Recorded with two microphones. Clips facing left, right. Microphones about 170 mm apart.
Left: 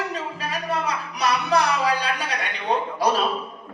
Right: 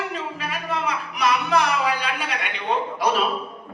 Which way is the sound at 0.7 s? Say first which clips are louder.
Even; 35° left (ahead or behind).